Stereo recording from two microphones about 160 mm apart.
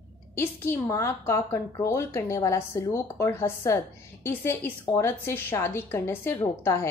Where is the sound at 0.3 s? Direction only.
15° left (ahead or behind).